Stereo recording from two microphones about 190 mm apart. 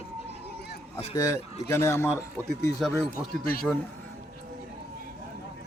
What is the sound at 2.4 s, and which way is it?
Speech, 10° right (ahead or behind).